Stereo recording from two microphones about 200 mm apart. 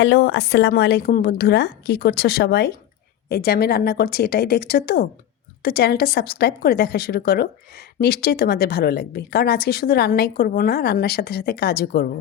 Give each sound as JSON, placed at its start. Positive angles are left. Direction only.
{"t": 0.0, "sound": "a woman's voice", "side_deg": 60}